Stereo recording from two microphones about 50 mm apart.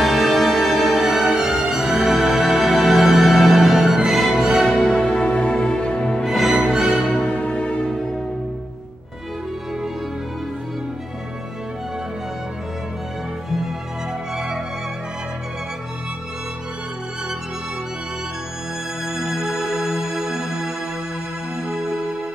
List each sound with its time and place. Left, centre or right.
0.0 s music: centre
4.7 s music: centre
6.2 s music: centre
7.1 s music: left
19.0 s music: centre